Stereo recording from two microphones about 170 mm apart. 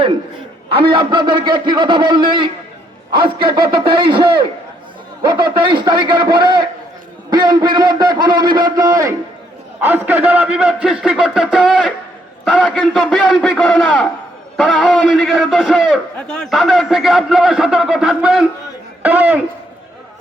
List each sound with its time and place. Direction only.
0.7 s a man's voice: 30° right (ahead or behind)
9.8 s a man's voice: 10° right (ahead or behind)